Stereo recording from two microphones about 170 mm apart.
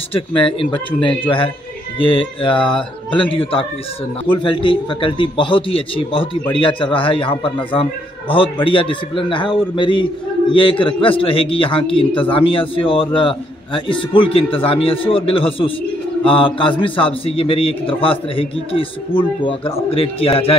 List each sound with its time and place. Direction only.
1.0 s a man's voice: 30° left (ahead or behind)